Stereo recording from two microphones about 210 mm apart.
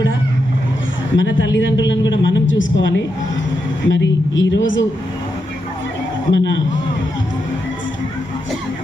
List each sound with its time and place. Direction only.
1.1 s a man's voice: 60° left (ahead or behind)
6.3 s a man's voice: 60° left (ahead or behind)